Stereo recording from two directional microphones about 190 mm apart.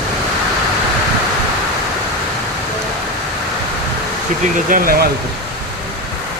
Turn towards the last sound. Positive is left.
turn(degrees=-50)  # may be behind; listen again after turning